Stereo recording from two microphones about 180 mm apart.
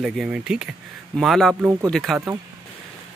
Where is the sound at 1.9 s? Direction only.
Centre (ahead or behind).